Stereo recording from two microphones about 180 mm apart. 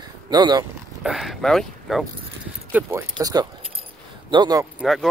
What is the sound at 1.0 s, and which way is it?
Speech, centre (ahead or behind).